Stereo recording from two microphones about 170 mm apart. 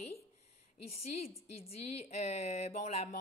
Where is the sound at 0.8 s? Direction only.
35° left (ahead or behind).